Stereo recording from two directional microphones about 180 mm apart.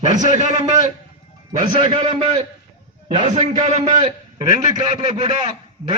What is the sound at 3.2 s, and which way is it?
Speech, 40° right (ahead or behind).